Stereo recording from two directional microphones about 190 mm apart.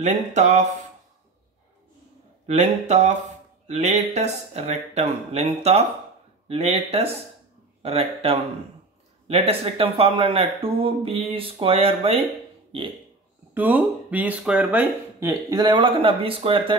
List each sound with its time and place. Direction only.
0.0 s speech: 40° right (ahead or behind)
2.4 s speech: 35° right (ahead or behind)
13.6 s speech: 10° right (ahead or behind); by 16.7 s 30° right (ahead or behind)